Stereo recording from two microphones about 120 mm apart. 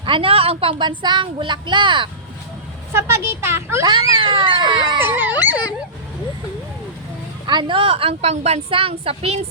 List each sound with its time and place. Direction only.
0.0 s speech: 50° right (ahead or behind)
2.9 s speech: 20° right (ahead or behind)
3.8 s speech: 45° right (ahead or behind)
4.9 s dog: 15° right (ahead or behind)
7.4 s speech: 40° right (ahead or behind)